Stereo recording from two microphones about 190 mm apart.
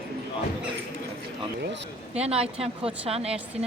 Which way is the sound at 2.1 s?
30° right (ahead or behind).